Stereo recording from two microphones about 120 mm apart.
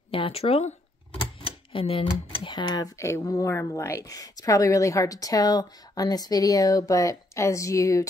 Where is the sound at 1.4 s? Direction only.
50° left (ahead or behind).